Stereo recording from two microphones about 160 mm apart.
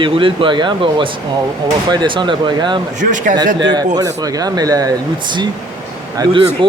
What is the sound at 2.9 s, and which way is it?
Speech, 55° right (ahead or behind).